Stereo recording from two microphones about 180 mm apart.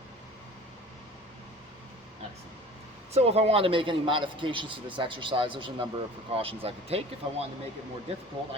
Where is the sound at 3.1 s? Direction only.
35° right (ahead or behind).